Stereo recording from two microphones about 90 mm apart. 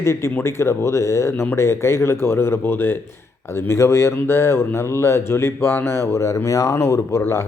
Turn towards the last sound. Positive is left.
turn(degrees=30)  # may be behind; listen again after turning